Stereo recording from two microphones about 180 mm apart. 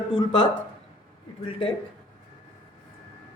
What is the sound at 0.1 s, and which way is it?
Speech, 25° left (ahead or behind).